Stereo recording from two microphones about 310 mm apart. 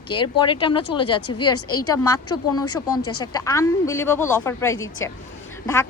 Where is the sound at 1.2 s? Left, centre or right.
Left.